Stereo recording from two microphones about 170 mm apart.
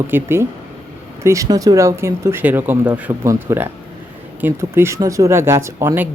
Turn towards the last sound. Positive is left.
turn(degrees=-15)  # may be behind; listen again after turning